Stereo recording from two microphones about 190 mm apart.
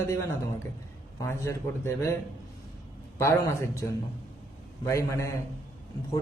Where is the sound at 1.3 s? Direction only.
15° left (ahead or behind).